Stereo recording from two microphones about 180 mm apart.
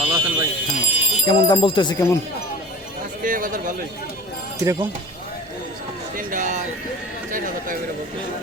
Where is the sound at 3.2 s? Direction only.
50° right (ahead or behind).